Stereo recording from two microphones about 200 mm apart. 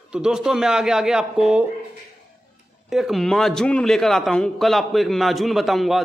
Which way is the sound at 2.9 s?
Centre (ahead or behind).